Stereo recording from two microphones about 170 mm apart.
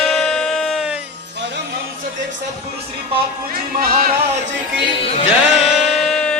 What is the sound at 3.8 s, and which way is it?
Music, 60° right (ahead or behind).